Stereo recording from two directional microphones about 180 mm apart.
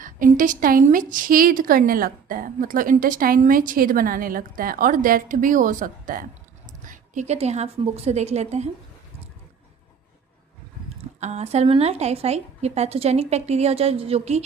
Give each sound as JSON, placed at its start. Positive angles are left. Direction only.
{"t": 0.0, "sound": "a woman's voice", "side_deg": -45}
{"t": 10.8, "sound": "speech", "side_deg": -40}